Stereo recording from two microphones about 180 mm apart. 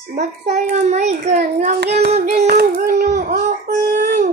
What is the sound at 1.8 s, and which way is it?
Child singing, 65° right (ahead or behind).